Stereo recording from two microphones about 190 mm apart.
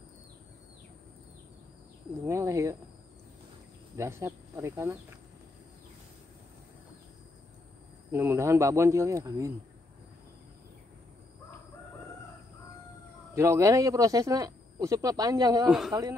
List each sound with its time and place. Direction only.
2.2 s speech: 15° right (ahead or behind)
3.9 s speech: 15° right (ahead or behind)
8.1 s speech: 10° right (ahead or behind)
13.3 s speech: 15° right (ahead or behind)